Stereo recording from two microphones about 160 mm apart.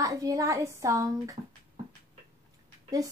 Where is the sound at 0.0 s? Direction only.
20° right (ahead or behind).